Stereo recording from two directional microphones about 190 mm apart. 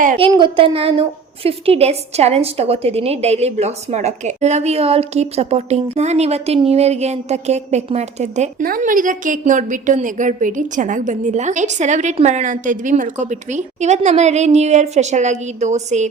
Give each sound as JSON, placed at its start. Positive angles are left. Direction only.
{"t": 0.2, "sound": "a woman's voice", "side_deg": -25}
{"t": 8.6, "sound": "a woman's voice", "side_deg": -50}